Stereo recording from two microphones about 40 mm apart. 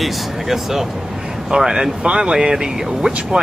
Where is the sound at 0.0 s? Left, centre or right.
Centre.